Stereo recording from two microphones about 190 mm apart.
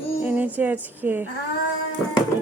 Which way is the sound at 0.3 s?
10° right (ahead or behind).